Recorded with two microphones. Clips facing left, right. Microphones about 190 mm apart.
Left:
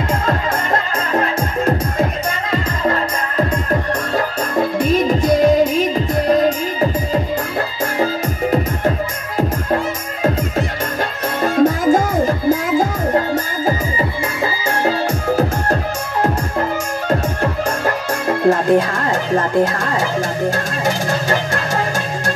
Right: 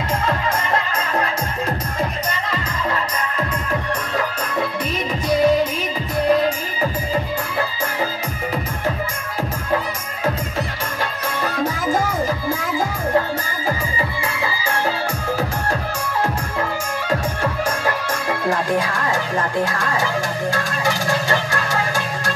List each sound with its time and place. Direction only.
2.5 s music: 50° left (ahead or behind)
4.6 s music: 45° left (ahead or behind)
11.4 s music: 50° left (ahead or behind)
14.4 s music: 50° left (ahead or behind)
18.7 s music: 60° left (ahead or behind)